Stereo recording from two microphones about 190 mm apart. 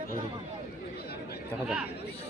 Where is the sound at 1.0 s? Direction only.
55° left (ahead or behind).